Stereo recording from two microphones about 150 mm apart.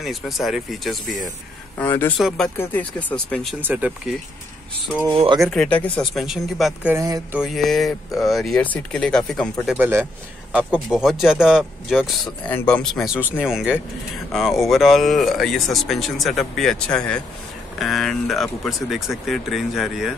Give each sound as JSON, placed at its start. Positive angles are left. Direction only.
{"t": 0.0, "sound": "speech", "side_deg": 0}
{"t": 1.8, "sound": "speech", "side_deg": 15}
{"t": 2.1, "sound": "speech", "side_deg": 0}
{"t": 2.5, "sound": "speech", "side_deg": 10}
{"t": 3.6, "sound": "speech", "side_deg": -10}
{"t": 5.0, "sound": "speech", "side_deg": -30}
{"t": 5.4, "sound": "speech", "side_deg": 5}
{"t": 9.8, "sound": "speech", "side_deg": -15}
{"t": 12.4, "sound": "speech", "side_deg": 10}
{"t": 13.0, "sound": "speech", "side_deg": -5}